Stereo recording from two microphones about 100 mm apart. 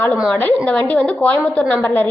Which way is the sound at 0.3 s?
15° left (ahead or behind).